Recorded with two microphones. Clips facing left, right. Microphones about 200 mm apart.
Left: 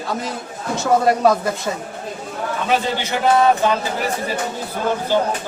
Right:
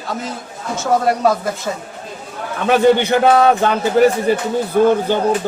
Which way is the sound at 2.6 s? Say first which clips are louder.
Right 10 dB; 60° right (ahead or behind).